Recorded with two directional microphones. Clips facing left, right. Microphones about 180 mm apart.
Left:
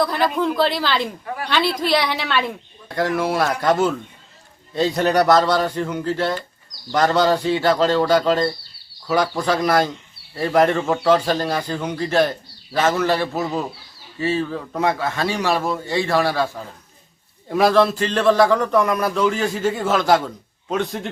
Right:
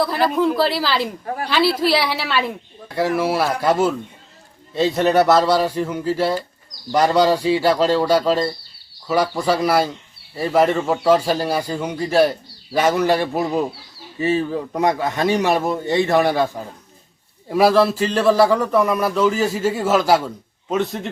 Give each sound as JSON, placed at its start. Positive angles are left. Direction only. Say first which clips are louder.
{"t": 0.0, "sound": "speech", "louder": "right 2 dB", "side_deg": -5}
{"t": 1.2, "sound": "a woman's voice", "louder": "right 3 dB", "side_deg": -40}
{"t": 1.5, "sound": "a man's voice", "louder": "right 2 dB", "side_deg": -5}
{"t": 17.5, "sound": "a man's voice", "louder": "right 1 dB", "side_deg": -5}